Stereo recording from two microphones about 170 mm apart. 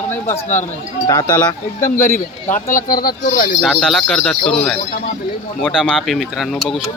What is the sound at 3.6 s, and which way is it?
Speech, centre (ahead or behind).